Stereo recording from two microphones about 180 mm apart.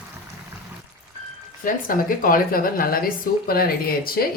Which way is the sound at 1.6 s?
50° left (ahead or behind).